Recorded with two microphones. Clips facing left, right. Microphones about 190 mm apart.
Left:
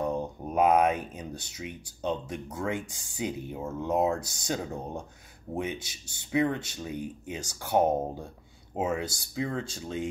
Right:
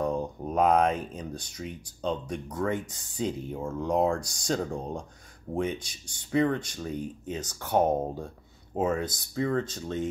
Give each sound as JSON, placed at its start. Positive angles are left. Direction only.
{"t": 0.5, "sound": "speech", "side_deg": 10}